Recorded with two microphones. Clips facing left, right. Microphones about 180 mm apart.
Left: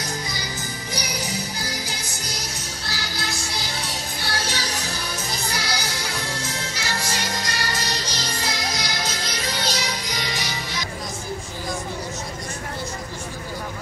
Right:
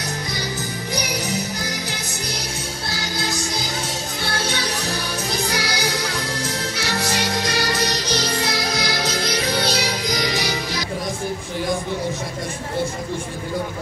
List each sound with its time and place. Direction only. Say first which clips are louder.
4.5 s music: right 4 dB; 60° right (ahead or behind)